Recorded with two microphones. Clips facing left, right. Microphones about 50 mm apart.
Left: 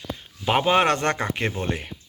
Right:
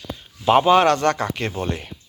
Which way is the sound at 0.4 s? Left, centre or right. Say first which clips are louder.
Right 6 dB; centre.